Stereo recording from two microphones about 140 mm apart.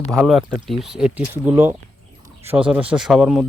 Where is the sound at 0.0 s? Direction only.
Centre (ahead or behind).